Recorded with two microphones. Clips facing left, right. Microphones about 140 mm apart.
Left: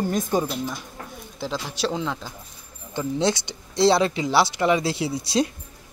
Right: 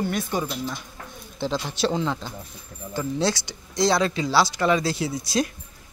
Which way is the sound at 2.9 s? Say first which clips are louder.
Left 1 dB; 20° left (ahead or behind).